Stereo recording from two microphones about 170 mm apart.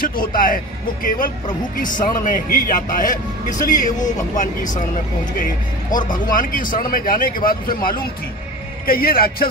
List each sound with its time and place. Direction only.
0.0 s a man's voice: 55° left (ahead or behind)
5.9 s a man's voice: 50° left (ahead or behind)